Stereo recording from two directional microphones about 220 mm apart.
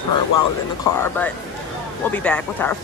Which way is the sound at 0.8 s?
10° left (ahead or behind).